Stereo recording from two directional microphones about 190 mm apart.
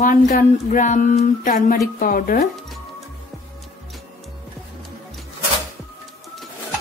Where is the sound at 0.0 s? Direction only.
40° left (ahead or behind).